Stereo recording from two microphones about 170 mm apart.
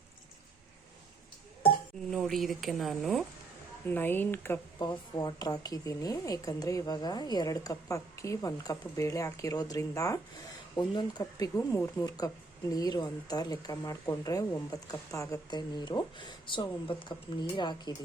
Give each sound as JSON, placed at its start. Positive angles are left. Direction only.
{"t": 2.0, "sound": "speech", "side_deg": 0}
{"t": 3.8, "sound": "speech", "side_deg": 10}
{"t": 4.8, "sound": "speech", "side_deg": 25}